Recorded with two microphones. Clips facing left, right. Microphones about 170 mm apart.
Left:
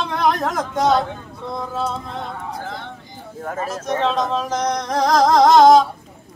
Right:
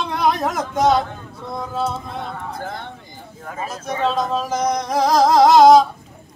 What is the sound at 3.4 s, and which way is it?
Speech, 50° left (ahead or behind).